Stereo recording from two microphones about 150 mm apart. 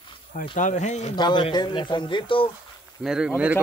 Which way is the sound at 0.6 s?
55° left (ahead or behind).